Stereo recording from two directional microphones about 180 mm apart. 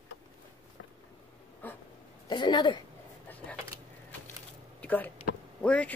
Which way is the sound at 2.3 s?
25° left (ahead or behind).